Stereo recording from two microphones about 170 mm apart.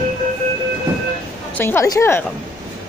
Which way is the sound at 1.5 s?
15° left (ahead or behind).